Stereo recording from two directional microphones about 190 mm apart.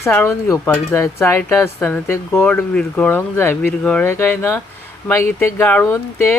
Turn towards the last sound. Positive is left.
turn(degrees=10)  # may be behind; listen again after turning